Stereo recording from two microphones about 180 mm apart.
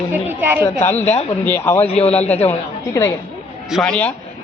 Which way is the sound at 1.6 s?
15° left (ahead or behind).